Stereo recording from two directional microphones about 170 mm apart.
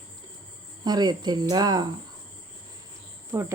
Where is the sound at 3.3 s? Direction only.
15° right (ahead or behind).